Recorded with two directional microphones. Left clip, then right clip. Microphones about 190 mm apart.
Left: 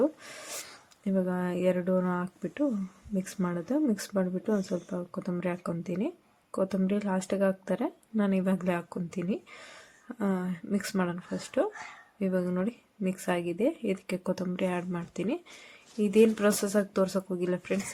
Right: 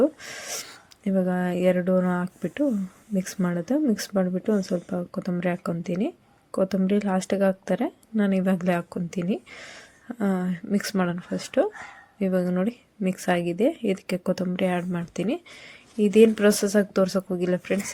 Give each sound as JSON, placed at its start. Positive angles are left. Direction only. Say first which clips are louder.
{"t": 0.0, "sound": "speech", "louder": "right 6 dB", "side_deg": -20}